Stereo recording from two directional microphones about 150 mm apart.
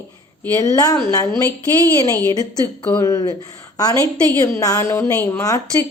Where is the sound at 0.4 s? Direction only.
20° left (ahead or behind).